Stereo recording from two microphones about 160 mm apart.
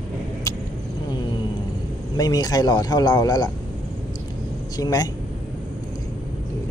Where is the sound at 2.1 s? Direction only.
25° left (ahead or behind).